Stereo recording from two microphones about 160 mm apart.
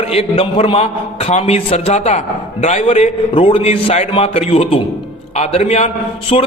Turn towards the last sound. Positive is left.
turn(degrees=35)  # may be behind; listen again after turning